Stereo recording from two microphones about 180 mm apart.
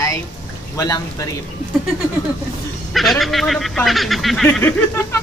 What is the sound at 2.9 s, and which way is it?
Speech, centre (ahead or behind).